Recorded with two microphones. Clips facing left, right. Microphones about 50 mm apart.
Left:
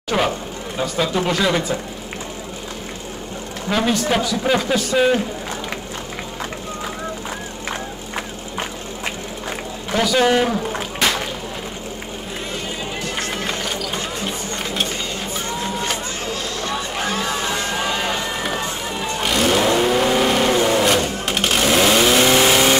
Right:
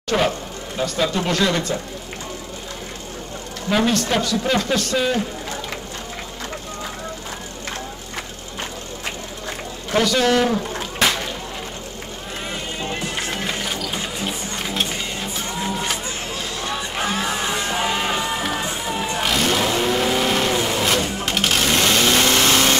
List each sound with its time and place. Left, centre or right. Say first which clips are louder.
0.1 s a man's voice: even; centre
3.7 s a man's voice: even; centre
4.9 s a man's voice: left 6 dB; centre
9.9 s a man's voice: left 1 dB; centre
13.2 s a sound: left 1 dB; centre
15.6 s vehicle: right 1 dB; centre
16.6 s music: even; centre
18.9 s vehicle: right 1 dB; centre